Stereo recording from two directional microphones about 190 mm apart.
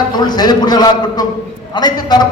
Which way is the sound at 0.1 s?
20° left (ahead or behind).